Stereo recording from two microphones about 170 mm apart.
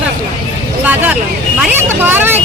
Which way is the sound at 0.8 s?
5° right (ahead or behind).